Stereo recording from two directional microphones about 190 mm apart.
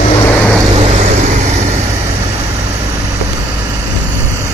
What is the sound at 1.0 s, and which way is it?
Vehicle, 35° right (ahead or behind).